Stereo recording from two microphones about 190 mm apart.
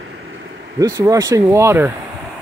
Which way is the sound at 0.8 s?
20° right (ahead or behind).